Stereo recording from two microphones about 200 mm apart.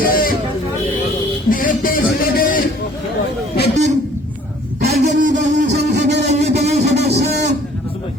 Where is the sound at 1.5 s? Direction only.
45° left (ahead or behind).